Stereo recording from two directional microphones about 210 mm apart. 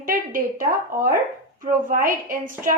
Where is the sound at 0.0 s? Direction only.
40° right (ahead or behind).